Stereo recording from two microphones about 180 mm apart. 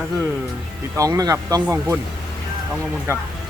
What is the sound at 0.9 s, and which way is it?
Speech, 20° right (ahead or behind).